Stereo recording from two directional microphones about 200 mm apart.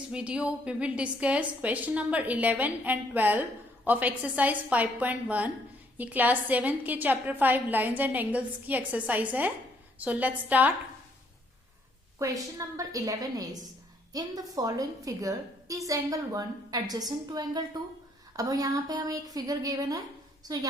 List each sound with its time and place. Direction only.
0.1 s a woman's voice: 5° right (ahead or behind)
12.2 s a woman's voice: 15° right (ahead or behind)